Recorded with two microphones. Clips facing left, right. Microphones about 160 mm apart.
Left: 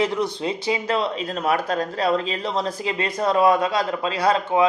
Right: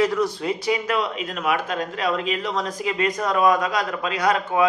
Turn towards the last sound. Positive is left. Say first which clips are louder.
# left 1 dB
turn(degrees=25)  # may be behind; listen again after turning